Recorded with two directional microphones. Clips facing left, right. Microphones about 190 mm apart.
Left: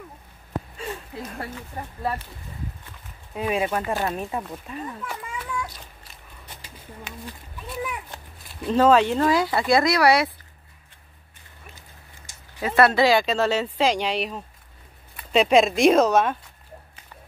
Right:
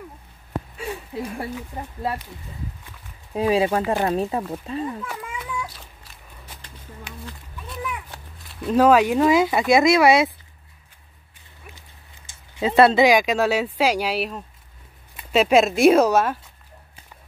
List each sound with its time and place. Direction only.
0.7 s speech: 10° right (ahead or behind)
3.3 s speech: 30° right (ahead or behind)
3.8 s speech: 15° right (ahead or behind)
4.1 s speech: 30° right (ahead or behind)
5.0 s a sound: 5° right (ahead or behind)
8.6 s speech: 10° right (ahead or behind)
12.5 s speech: 25° right (ahead or behind); by 16.3 s 5° right (ahead or behind)